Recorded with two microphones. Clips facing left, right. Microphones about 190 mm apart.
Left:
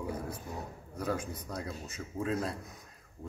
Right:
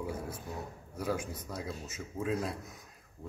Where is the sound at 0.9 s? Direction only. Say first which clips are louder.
Even; 10° right (ahead or behind).